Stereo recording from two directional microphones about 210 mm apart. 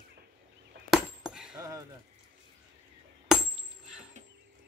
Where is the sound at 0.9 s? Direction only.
5° right (ahead or behind).